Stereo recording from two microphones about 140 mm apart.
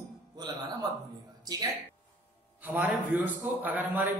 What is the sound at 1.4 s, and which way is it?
Speech, 30° right (ahead or behind).